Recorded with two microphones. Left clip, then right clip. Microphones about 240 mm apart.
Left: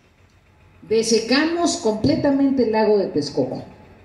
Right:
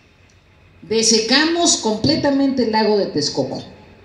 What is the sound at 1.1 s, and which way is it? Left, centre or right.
A woman's voice, right.